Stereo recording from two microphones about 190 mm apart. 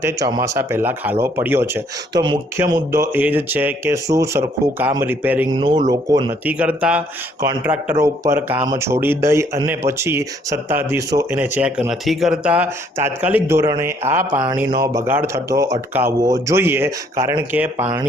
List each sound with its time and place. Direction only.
0.0 s speech: 20° right (ahead or behind)
2.2 s speech: 25° right (ahead or behind)
5.5 s speech: 25° right (ahead or behind)
6.4 s speech: 5° right (ahead or behind)